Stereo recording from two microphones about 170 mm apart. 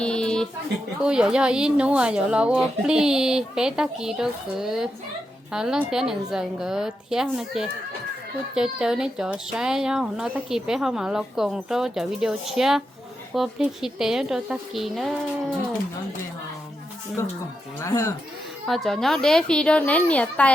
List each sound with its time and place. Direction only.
0.0 s a sound: 5° left (ahead or behind)
1.0 s speech: 5° right (ahead or behind)
17.7 s speech: 15° left (ahead or behind)
18.7 s speech: centre (ahead or behind)